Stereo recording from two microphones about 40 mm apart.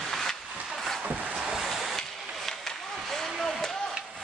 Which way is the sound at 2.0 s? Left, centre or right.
Centre.